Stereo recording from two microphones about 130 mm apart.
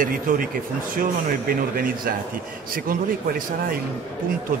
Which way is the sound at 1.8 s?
90° right.